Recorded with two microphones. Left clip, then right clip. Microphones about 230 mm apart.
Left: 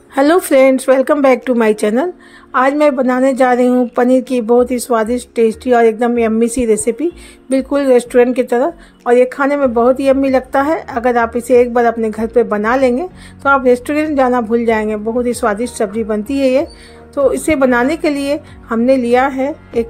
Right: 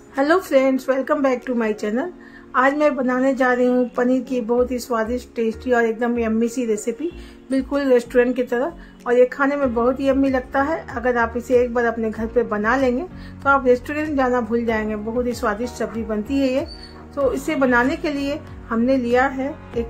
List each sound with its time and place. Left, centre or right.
0.1 s speech: left